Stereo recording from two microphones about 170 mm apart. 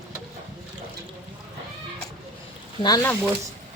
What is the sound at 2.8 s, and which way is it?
Speech, 20° left (ahead or behind).